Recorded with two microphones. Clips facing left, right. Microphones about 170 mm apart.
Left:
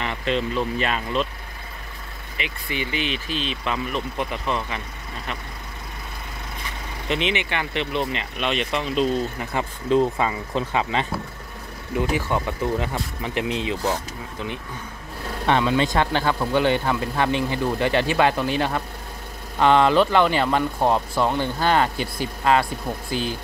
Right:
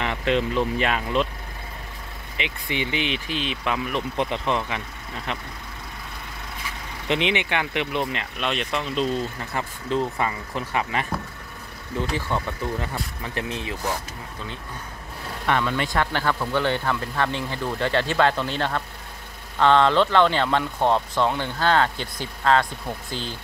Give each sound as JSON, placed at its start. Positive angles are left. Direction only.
{"t": 0.0, "sound": "vehicle", "side_deg": -15}
{"t": 0.7, "sound": "speech", "side_deg": -15}
{"t": 2.3, "sound": "speech", "side_deg": -20}
{"t": 4.2, "sound": "speech", "side_deg": -20}
{"t": 7.1, "sound": "speech", "side_deg": -15}
{"t": 9.4, "sound": "speech", "side_deg": 20}
{"t": 11.9, "sound": "speech", "side_deg": 15}
{"t": 15.4, "sound": "speech", "side_deg": 25}